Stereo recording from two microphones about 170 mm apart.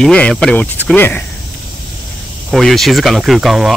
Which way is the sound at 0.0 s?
5° left (ahead or behind).